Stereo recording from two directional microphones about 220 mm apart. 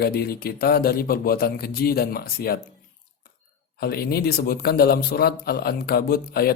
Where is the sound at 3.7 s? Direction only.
45° left (ahead or behind).